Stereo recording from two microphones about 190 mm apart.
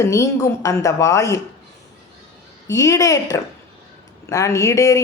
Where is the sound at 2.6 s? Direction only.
15° left (ahead or behind).